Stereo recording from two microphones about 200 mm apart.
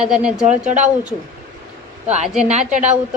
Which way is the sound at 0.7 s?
35° right (ahead or behind).